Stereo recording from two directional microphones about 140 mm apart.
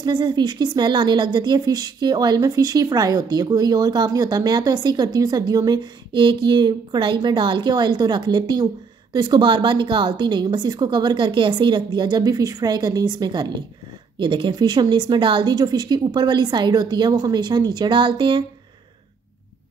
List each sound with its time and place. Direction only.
0.0 s a woman's voice: 35° right (ahead or behind)